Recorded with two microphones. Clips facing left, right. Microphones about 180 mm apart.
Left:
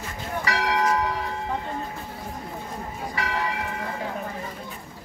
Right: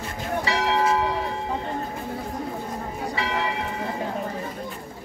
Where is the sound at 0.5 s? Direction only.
25° right (ahead or behind).